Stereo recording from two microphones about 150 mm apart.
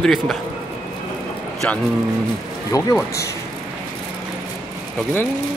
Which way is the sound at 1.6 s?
10° left (ahead or behind).